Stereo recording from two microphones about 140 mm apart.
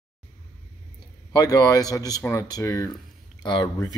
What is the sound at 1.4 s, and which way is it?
Speech, 25° left (ahead or behind).